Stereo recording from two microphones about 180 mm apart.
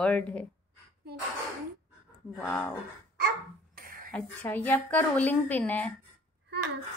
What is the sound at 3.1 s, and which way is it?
Dog, 55° right (ahead or behind).